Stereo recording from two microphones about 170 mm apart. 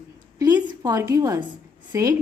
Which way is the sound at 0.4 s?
20° right (ahead or behind).